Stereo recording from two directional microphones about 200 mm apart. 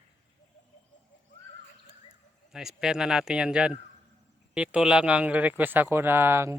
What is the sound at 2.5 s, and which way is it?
Speech, centre (ahead or behind).